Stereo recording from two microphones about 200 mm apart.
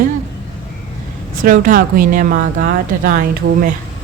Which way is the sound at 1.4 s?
45° right (ahead or behind).